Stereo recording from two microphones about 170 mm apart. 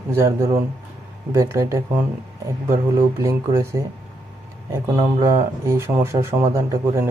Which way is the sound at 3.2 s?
15° right (ahead or behind).